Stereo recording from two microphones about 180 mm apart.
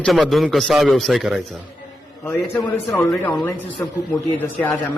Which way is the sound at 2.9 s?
20° left (ahead or behind).